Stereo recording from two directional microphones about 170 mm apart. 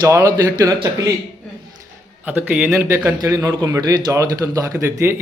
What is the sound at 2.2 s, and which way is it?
A man's voice, 10° right (ahead or behind).